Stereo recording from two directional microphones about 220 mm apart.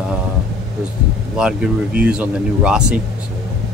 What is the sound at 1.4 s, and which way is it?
Speech, 5° right (ahead or behind).